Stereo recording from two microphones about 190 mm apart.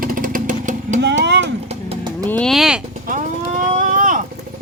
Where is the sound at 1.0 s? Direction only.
65° right (ahead or behind).